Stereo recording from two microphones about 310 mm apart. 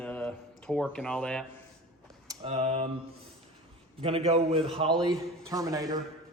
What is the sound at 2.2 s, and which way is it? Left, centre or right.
Speech, centre.